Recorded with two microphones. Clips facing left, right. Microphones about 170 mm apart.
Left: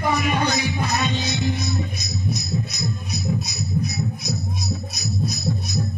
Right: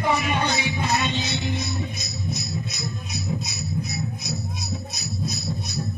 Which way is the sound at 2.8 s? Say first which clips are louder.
Left 4 dB; 40° left (ahead or behind).